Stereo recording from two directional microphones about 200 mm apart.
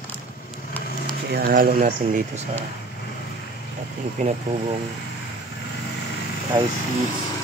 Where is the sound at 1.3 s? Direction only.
50° right (ahead or behind).